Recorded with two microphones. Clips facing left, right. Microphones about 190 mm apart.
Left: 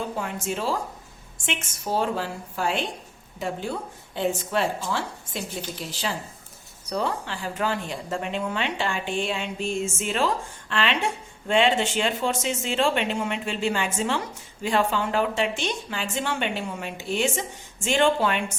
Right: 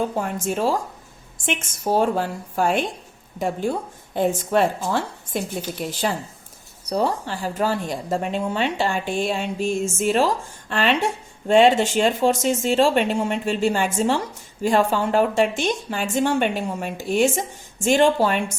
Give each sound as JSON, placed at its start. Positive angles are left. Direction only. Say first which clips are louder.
{"t": 0.2, "sound": "a woman's voice", "louder": "right 5 dB", "side_deg": -45}
{"t": 6.9, "sound": "a woman's voice", "louder": "right 5 dB", "side_deg": -40}